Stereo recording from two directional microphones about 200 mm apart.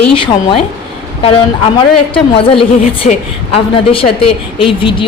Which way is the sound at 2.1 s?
25° left (ahead or behind).